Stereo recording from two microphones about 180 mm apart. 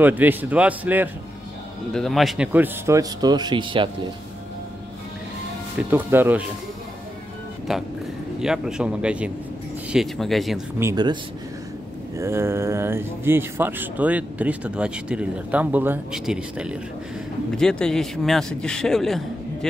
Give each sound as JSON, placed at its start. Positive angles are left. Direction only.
{"t": 0.0, "sound": "speech", "side_deg": -10}
{"t": 1.9, "sound": "speech", "side_deg": 0}
{"t": 5.9, "sound": "speech", "side_deg": -10}
{"t": 8.4, "sound": "a man's voice", "side_deg": -5}
{"t": 10.8, "sound": "speech", "side_deg": -20}
{"t": 12.2, "sound": "a man's voice", "side_deg": -15}